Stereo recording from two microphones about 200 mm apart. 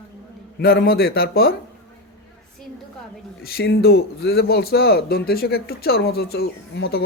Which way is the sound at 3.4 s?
50° left (ahead or behind).